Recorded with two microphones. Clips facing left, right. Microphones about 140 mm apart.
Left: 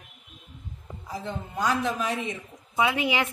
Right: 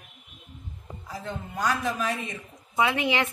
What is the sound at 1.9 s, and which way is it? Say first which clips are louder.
A woman's voice: left 1 dB; 15° left (ahead or behind).